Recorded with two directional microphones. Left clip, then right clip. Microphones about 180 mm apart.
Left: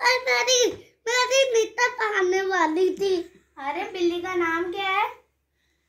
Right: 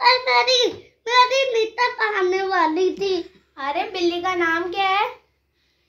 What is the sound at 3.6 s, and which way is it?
A child's voice, 40° right (ahead or behind).